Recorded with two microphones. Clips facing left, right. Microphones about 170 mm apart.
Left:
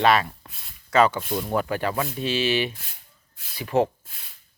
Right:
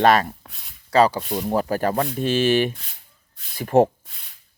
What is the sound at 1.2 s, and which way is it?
Speech, centre (ahead or behind).